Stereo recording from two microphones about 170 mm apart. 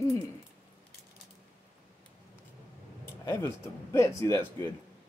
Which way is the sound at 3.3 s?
15° left (ahead or behind).